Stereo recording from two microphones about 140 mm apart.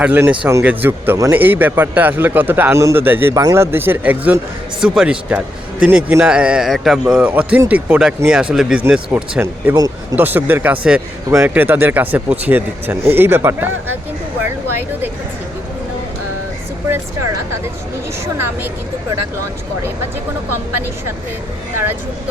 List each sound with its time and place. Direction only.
0.0 s speech: 10° right (ahead or behind)
9.7 s speech: 25° right (ahead or behind)
10.2 s speech: 15° right (ahead or behind)
18.3 s speech: 15° right (ahead or behind)